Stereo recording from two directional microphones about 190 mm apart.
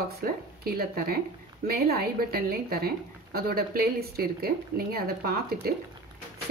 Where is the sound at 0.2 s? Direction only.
55° right (ahead or behind).